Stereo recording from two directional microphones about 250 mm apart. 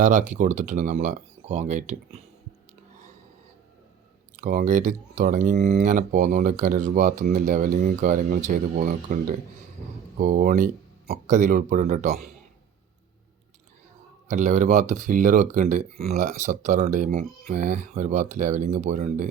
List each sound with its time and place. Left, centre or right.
0.0 s speech: right
4.4 s speech: right
14.3 s speech: right